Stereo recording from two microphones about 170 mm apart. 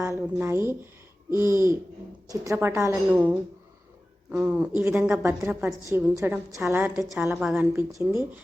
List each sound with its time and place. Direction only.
0.0 s a woman's voice: 10° right (ahead or behind)